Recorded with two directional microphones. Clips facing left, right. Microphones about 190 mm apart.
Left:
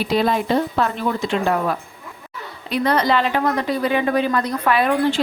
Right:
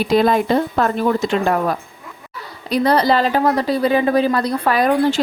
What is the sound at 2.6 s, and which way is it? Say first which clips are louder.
A woman's voice: right 3 dB; 35° right (ahead or behind).